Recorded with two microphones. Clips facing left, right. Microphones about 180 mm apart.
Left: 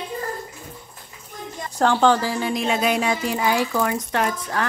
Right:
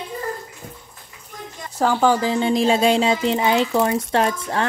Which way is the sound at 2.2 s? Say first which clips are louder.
Right 5 dB; 25° right (ahead or behind).